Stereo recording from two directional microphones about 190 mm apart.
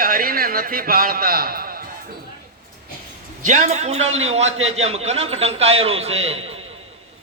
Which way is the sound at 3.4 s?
40° right (ahead or behind).